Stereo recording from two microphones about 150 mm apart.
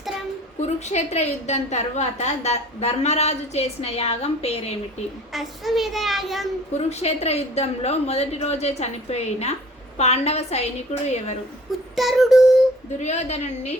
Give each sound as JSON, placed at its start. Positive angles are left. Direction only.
{"t": 0.9, "sound": "a woman's voice", "side_deg": 50}
{"t": 5.3, "sound": "a child's voice", "side_deg": 0}
{"t": 6.7, "sound": "a woman's voice", "side_deg": 45}
{"t": 11.9, "sound": "a child's voice", "side_deg": 0}
{"t": 13.0, "sound": "a woman's voice", "side_deg": 50}